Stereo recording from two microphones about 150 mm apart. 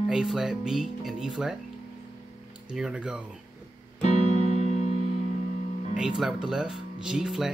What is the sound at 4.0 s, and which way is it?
Keyboard, 50° left (ahead or behind).